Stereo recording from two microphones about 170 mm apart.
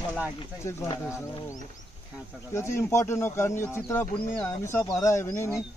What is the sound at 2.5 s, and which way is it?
Speech, 15° left (ahead or behind).